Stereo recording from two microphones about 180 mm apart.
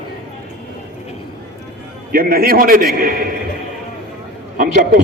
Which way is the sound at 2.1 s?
55° right (ahead or behind).